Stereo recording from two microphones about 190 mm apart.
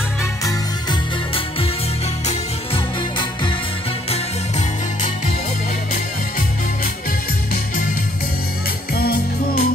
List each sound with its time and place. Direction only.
0.5 s music: 25° left (ahead or behind)
4.1 s music: 35° left (ahead or behind)
8.9 s music: 55° left (ahead or behind)